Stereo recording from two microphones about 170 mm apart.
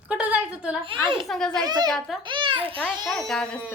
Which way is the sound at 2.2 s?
30° right (ahead or behind).